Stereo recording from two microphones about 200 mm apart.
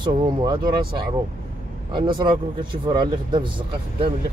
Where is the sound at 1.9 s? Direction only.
25° right (ahead or behind).